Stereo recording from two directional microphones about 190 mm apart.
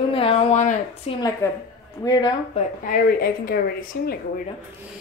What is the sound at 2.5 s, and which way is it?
A woman's voice, 50° left (ahead or behind).